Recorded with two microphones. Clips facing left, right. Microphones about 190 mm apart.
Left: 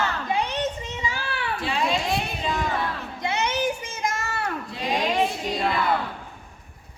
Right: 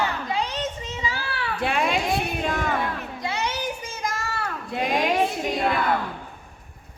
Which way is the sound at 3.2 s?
20° left (ahead or behind).